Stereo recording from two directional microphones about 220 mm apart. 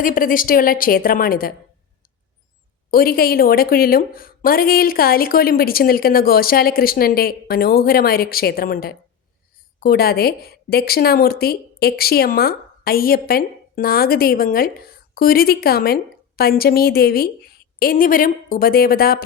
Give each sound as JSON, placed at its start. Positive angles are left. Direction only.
{"t": 0.0, "sound": "a woman's voice", "side_deg": 40}
{"t": 2.9, "sound": "a woman's voice", "side_deg": 40}